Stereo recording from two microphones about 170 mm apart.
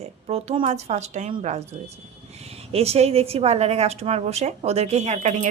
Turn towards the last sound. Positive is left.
turn(degrees=-40)  # may be behind; listen again after turning